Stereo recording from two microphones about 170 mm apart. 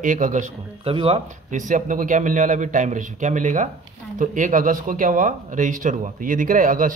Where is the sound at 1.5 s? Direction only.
50° right (ahead or behind).